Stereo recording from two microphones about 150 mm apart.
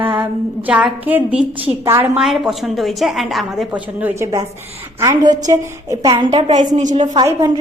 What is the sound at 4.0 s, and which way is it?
A woman's voice, 15° right (ahead or behind).